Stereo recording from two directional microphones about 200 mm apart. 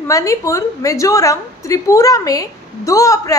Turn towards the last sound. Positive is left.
turn(degrees=15)  # may be behind; listen again after turning